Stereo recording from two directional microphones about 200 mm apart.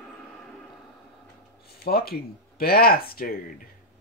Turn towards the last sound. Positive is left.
turn(degrees=50)  # may be behind; listen again after turning